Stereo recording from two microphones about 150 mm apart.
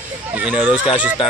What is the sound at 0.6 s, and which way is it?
Speech, 35° left (ahead or behind).